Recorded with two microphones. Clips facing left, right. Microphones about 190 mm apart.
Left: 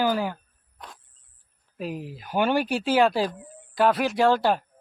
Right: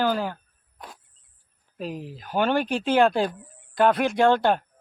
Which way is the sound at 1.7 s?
10° left (ahead or behind).